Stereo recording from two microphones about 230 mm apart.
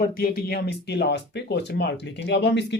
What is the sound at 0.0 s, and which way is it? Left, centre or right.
Speech, left.